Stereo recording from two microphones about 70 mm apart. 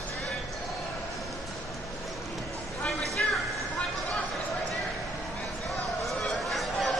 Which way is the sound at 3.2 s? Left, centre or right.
Centre.